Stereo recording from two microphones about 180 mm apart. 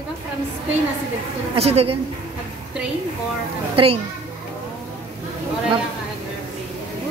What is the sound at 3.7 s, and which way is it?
Speech, 30° right (ahead or behind).